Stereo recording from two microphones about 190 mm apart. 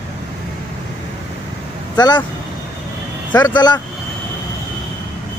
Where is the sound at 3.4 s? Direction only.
20° left (ahead or behind).